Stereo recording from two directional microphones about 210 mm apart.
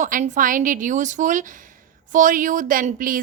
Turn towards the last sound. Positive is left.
turn(degrees=-40)  # may be behind; listen again after turning